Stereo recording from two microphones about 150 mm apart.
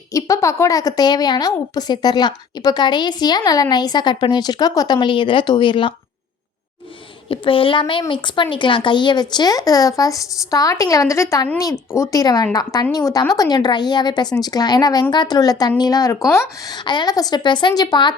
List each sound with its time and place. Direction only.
0.1 s a woman's voice: 20° left (ahead or behind)
7.3 s a woman's voice: 35° left (ahead or behind)